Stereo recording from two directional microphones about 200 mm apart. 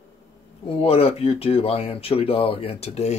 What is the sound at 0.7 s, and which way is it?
Speech, 30° left (ahead or behind).